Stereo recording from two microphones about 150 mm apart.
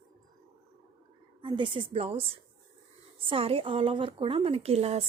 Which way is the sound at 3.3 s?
40° right (ahead or behind).